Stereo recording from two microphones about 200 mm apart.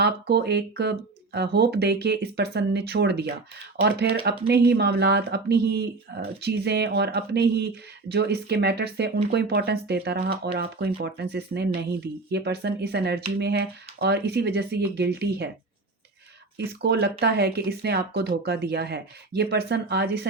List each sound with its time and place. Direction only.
0.0 s speech: 55° right (ahead or behind)
16.6 s speech: 55° right (ahead or behind)